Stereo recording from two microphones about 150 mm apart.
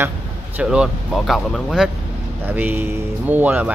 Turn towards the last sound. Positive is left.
turn(degrees=-10)  # may be behind; listen again after turning